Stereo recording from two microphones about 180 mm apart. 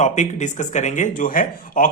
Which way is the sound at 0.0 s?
40° left (ahead or behind).